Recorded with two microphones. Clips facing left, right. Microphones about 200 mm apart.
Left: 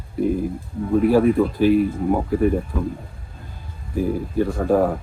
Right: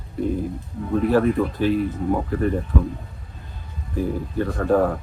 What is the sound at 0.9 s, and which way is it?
Speech, 10° left (ahead or behind).